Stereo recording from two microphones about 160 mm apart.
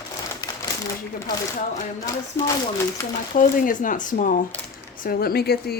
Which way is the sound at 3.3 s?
55° left (ahead or behind).